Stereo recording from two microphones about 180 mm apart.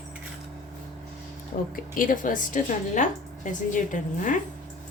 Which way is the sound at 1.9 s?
45° left (ahead or behind).